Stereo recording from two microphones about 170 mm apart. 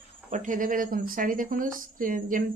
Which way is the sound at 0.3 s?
45° right (ahead or behind).